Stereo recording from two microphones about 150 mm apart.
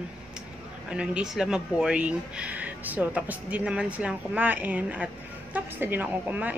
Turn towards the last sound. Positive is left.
turn(degrees=-10)  # may be behind; listen again after turning